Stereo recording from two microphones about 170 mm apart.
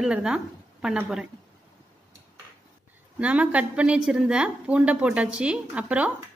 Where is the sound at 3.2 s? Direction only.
10° right (ahead or behind).